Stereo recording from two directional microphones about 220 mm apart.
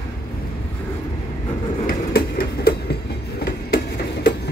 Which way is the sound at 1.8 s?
40° left (ahead or behind).